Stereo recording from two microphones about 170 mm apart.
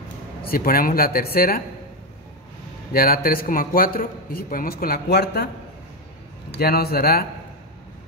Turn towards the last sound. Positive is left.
turn(degrees=65)  # may be behind; listen again after turning